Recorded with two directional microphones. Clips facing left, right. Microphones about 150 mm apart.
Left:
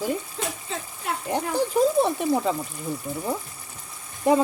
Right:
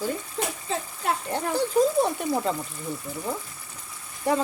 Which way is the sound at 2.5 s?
15° left (ahead or behind).